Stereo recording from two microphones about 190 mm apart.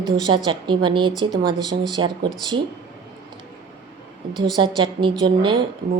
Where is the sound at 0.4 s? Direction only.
25° right (ahead or behind).